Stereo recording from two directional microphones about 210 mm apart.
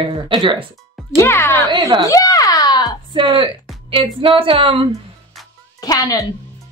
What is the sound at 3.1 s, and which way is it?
Speech, 25° right (ahead or behind).